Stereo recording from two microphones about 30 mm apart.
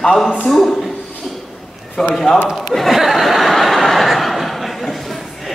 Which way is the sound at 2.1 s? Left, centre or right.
Centre.